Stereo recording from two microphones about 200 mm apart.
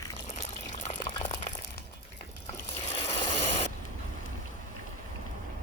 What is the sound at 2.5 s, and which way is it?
Vehicle, 30° left (ahead or behind).